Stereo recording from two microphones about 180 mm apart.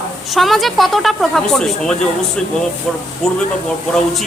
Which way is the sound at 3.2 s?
Centre (ahead or behind).